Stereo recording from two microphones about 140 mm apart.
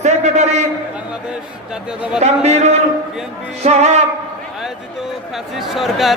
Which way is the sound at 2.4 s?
50° right (ahead or behind).